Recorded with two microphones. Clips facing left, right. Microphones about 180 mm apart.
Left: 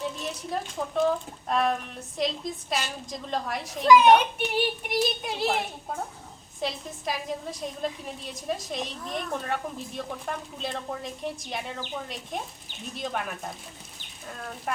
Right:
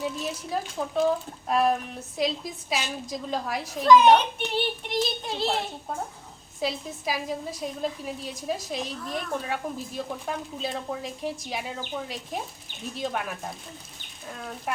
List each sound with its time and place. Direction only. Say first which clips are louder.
0.0 s a woman's voice: right 2 dB; 5° right (ahead or behind)
3.8 s speech: even; 10° left (ahead or behind)
6.6 s a woman's voice: right 2 dB; 5° right (ahead or behind)